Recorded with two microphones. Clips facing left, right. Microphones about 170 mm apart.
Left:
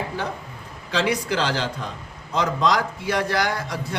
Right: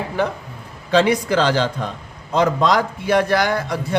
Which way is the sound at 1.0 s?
55° right (ahead or behind).